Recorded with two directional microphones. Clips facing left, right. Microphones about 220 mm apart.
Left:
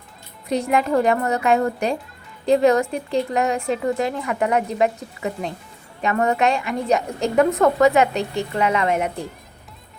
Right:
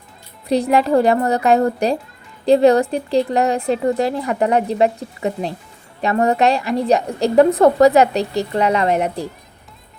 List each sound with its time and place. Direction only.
0.4 s a woman's voice: 35° right (ahead or behind)